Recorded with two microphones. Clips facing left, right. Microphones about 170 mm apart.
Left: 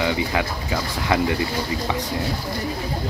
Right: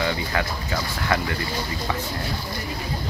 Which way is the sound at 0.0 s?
15° left (ahead or behind).